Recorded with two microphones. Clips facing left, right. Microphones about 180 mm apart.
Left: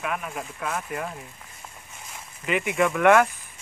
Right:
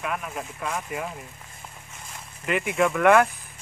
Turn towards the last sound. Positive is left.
turn(degrees=0)  # may be behind; listen again after turning